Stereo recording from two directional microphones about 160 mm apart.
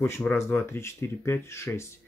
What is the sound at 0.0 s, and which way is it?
Speech, 15° left (ahead or behind).